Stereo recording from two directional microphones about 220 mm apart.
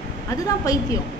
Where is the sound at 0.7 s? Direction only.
15° left (ahead or behind).